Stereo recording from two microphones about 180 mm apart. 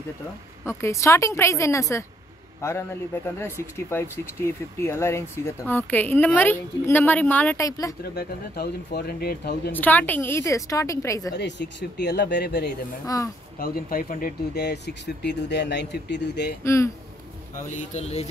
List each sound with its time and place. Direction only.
0.7 s speech: 15° left (ahead or behind)
3.3 s speech: 15° left (ahead or behind)
8.1 s speech: 60° left (ahead or behind)
9.7 s speech: 10° left (ahead or behind)
11.3 s speech: 75° left (ahead or behind)
13.0 s speech: 20° left (ahead or behind)
13.6 s speech: 55° left (ahead or behind)
16.6 s speech: 15° left (ahead or behind)
17.9 s speech: 35° left (ahead or behind)